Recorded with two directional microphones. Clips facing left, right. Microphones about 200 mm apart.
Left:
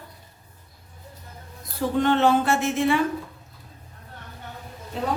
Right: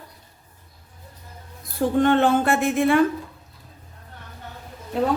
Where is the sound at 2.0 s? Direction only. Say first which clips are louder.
Right 1 dB; 50° right (ahead or behind).